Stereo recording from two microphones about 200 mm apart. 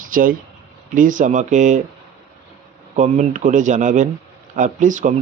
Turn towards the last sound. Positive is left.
turn(degrees=-40)  # may be behind; listen again after turning